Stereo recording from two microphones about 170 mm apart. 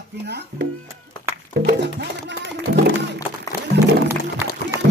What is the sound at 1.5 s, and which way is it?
Music, 75° right (ahead or behind).